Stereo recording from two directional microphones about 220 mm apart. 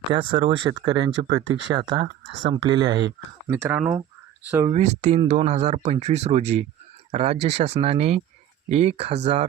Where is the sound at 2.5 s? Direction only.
20° right (ahead or behind).